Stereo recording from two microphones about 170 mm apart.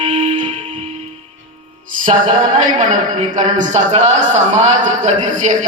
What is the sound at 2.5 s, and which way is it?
A man's voice, 50° right (ahead or behind).